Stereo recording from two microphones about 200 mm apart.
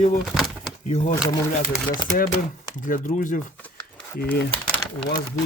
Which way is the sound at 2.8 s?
40° left (ahead or behind).